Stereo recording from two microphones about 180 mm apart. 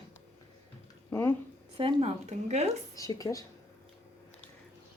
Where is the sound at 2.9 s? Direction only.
20° left (ahead or behind).